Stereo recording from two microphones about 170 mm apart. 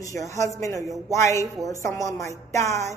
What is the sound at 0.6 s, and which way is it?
A woman's voice, 20° left (ahead or behind).